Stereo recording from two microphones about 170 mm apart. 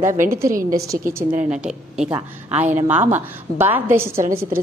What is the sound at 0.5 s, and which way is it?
Speech, 55° right (ahead or behind).